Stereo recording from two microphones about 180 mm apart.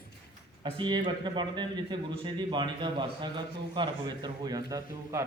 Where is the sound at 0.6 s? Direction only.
25° right (ahead or behind).